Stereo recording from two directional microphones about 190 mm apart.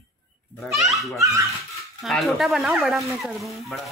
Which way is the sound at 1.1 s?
15° right (ahead or behind).